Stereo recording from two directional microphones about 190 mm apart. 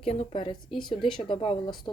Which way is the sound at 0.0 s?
30° left (ahead or behind).